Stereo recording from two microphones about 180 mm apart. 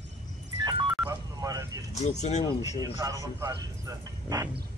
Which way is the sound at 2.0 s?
40° left (ahead or behind).